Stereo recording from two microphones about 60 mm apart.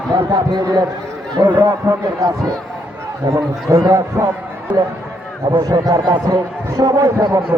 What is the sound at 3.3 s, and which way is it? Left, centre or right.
Speech, right.